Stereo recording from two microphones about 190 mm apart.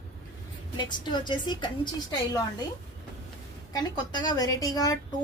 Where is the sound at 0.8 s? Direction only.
25° left (ahead or behind).